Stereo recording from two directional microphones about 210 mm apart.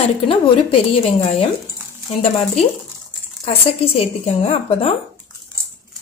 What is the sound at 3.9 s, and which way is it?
A woman's voice, 30° left (ahead or behind).